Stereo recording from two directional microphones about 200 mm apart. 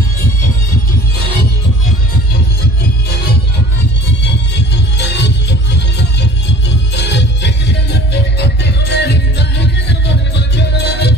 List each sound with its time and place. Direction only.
4.9 s music: 60° left (ahead or behind)